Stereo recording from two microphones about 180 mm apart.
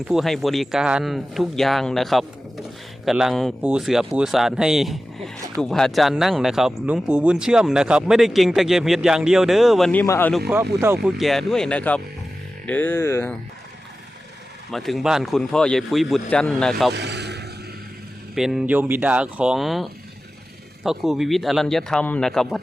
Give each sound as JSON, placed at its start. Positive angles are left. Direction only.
{"t": 0.0, "sound": "speech", "side_deg": 0}
{"t": 10.5, "sound": "speech", "side_deg": -15}
{"t": 11.0, "sound": "speech", "side_deg": 0}
{"t": 14.7, "sound": "speech", "side_deg": 0}
{"t": 16.9, "sound": "vehicle", "side_deg": -70}
{"t": 18.3, "sound": "speech", "side_deg": 0}